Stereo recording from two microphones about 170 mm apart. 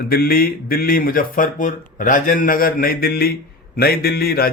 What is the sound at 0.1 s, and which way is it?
A man's voice, 60° left (ahead or behind).